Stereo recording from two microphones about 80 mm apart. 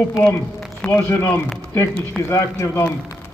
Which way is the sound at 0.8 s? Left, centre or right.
Left.